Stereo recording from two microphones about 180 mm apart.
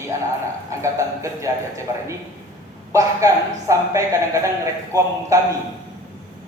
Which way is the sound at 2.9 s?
15° right (ahead or behind).